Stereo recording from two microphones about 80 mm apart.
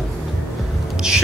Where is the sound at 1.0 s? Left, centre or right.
Centre.